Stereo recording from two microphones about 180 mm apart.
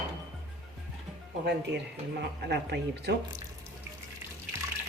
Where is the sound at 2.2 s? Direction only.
65° right (ahead or behind).